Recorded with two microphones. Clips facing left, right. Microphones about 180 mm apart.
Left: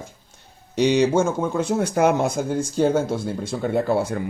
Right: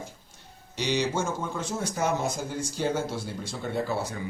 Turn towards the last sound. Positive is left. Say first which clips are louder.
# left 8 dB
turn(degrees=55)  # may be behind; listen again after turning